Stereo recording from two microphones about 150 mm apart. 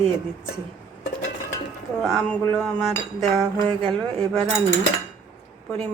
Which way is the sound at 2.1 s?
10° left (ahead or behind).